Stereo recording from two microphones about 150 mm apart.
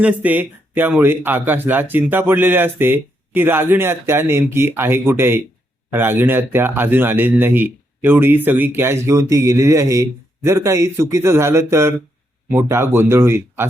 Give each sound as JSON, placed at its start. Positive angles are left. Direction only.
{"t": 0.0, "sound": "speech", "side_deg": -10}